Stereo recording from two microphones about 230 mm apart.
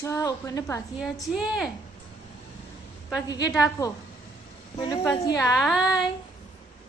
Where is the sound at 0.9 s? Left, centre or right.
Centre.